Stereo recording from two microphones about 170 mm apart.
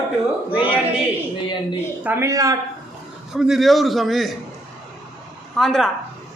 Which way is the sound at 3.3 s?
5° right (ahead or behind).